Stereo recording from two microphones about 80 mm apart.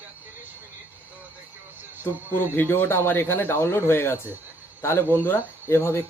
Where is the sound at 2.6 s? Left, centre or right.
Left.